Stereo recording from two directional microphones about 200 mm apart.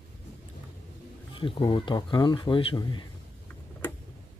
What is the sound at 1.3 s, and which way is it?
Speech, 25° left (ahead or behind).